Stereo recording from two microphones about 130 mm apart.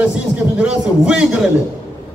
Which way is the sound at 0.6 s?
5° right (ahead or behind).